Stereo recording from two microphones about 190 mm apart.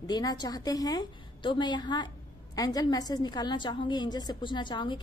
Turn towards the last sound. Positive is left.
turn(degrees=25)  # may be behind; listen again after turning